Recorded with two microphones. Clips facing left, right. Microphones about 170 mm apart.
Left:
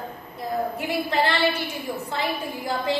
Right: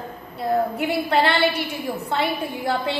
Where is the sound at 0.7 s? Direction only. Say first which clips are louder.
Right 4 dB; 70° right (ahead or behind).